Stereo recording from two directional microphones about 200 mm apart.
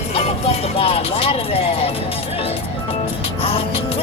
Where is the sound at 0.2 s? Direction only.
30° left (ahead or behind).